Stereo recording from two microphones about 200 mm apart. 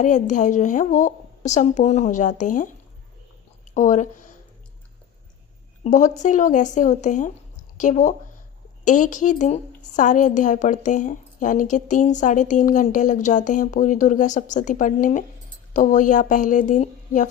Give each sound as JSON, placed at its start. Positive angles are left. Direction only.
{"t": 0.0, "sound": "a woman's voice", "side_deg": 40}
{"t": 3.8, "sound": "speech", "side_deg": 40}
{"t": 5.8, "sound": "a woman's voice", "side_deg": 40}